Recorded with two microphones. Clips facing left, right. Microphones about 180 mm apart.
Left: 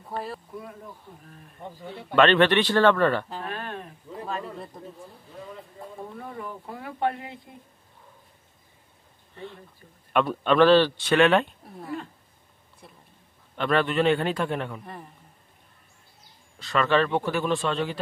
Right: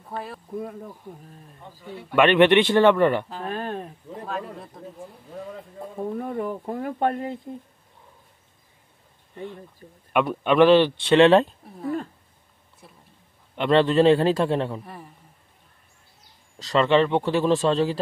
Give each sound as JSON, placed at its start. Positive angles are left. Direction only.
{"t": 0.0, "sound": "speech", "side_deg": 5}
{"t": 1.1, "sound": "speech", "side_deg": -15}
{"t": 3.4, "sound": "a man's voice", "side_deg": -40}
{"t": 4.7, "sound": "speech", "side_deg": 0}
{"t": 6.1, "sound": "speech", "side_deg": -45}
{"t": 9.3, "sound": "speech", "side_deg": -15}
{"t": 9.8, "sound": "speech", "side_deg": -30}
{"t": 10.1, "sound": "speech", "side_deg": -15}
{"t": 12.8, "sound": "speech", "side_deg": 0}
{"t": 13.6, "sound": "a man's voice", "side_deg": -25}
{"t": 16.7, "sound": "a man's voice", "side_deg": -20}